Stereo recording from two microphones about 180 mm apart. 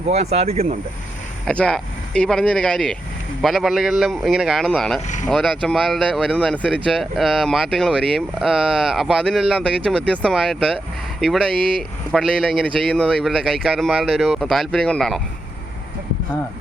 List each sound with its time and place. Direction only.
0.1 s speech: 35° right (ahead or behind)
1.5 s speech: 5° left (ahead or behind)